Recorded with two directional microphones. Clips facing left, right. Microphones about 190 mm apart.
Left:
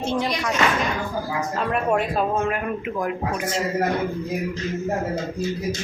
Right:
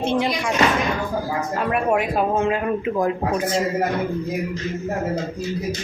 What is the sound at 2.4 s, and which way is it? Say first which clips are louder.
Speech: right 4 dB; 25° right (ahead or behind).